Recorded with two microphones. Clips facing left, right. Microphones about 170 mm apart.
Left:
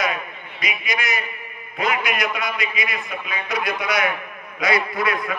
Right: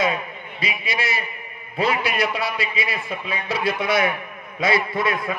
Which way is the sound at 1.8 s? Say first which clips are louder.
Right 2 dB; 30° right (ahead or behind).